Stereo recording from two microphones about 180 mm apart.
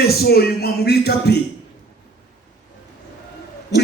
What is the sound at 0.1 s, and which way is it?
A man's voice, 60° left (ahead or behind).